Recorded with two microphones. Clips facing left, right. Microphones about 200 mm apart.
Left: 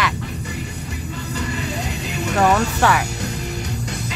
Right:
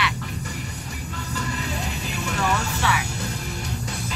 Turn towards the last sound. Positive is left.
turn(degrees=65)  # may be behind; listen again after turning